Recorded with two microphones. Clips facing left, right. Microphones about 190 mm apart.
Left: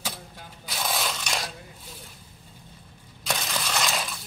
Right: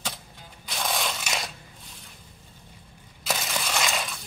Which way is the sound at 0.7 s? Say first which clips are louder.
Even; centre (ahead or behind).